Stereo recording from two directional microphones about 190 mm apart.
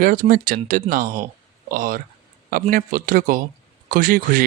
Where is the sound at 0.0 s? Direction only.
45° right (ahead or behind).